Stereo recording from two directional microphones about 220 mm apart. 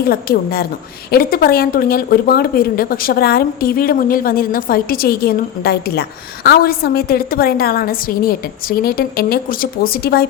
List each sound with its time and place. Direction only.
0.0 s speech: 45° left (ahead or behind)